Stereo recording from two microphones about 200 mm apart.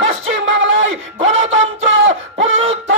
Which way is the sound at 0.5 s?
70° right (ahead or behind).